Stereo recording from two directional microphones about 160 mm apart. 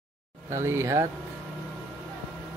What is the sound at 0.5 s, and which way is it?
Speech, 15° right (ahead or behind).